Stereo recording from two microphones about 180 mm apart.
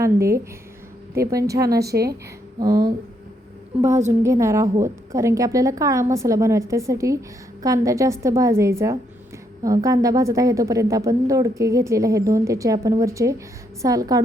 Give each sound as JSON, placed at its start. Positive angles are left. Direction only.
{"t": 0.0, "sound": "a woman's voice", "side_deg": -15}
{"t": 1.9, "sound": "a woman's voice", "side_deg": -60}
{"t": 2.6, "sound": "a woman's voice", "side_deg": -20}
{"t": 4.2, "sound": "a woman's voice", "side_deg": -15}